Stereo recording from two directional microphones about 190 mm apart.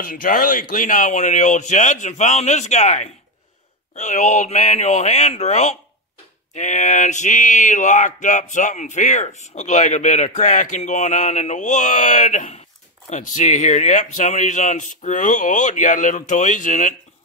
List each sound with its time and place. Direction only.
0.0 s speech: 50° left (ahead or behind)